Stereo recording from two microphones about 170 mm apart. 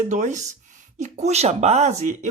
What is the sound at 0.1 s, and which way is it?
Speech, 45° right (ahead or behind).